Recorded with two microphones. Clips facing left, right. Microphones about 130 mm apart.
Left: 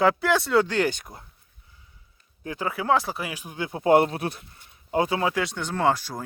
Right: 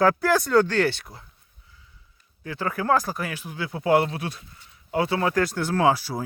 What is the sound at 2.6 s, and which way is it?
Speech, 5° left (ahead or behind).